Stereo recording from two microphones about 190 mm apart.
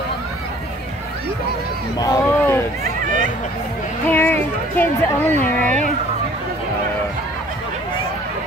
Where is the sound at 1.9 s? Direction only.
20° left (ahead or behind).